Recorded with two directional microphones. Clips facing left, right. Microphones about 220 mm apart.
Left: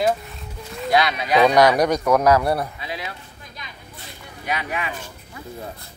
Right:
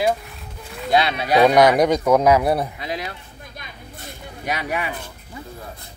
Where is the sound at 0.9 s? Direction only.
30° right (ahead or behind).